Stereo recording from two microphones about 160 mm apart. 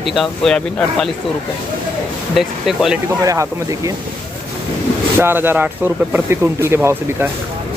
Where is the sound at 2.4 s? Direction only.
Centre (ahead or behind).